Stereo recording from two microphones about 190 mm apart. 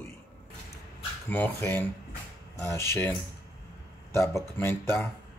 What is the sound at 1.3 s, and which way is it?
Speech, 10° left (ahead or behind).